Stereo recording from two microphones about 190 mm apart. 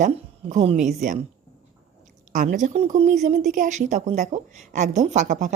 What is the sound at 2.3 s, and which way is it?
Speech, 45° right (ahead or behind).